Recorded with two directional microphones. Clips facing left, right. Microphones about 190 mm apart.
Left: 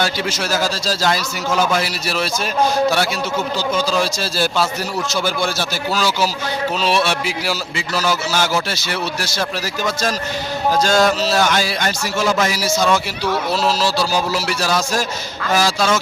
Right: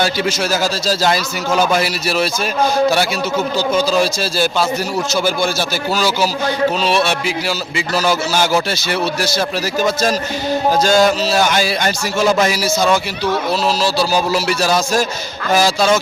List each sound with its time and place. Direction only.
0.0 s speech: 10° right (ahead or behind)
3.8 s a man's voice: 10° right (ahead or behind)
7.9 s speech: 15° right (ahead or behind)
10.8 s a man's voice: 10° right (ahead or behind)
14.1 s speech: 15° right (ahead or behind)